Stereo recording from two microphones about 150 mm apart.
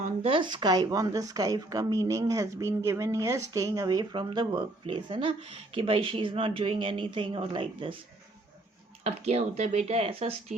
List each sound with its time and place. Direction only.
0.0 s speech: 40° right (ahead or behind)
9.0 s speech: 45° right (ahead or behind)